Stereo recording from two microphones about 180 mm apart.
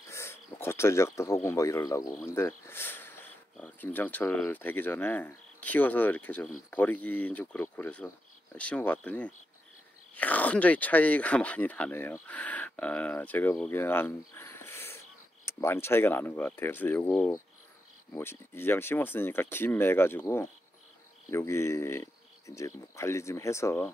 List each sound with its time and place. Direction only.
0.1 s speech: 15° left (ahead or behind)